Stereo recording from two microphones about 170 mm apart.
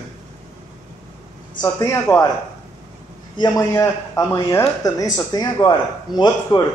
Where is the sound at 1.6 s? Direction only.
20° left (ahead or behind).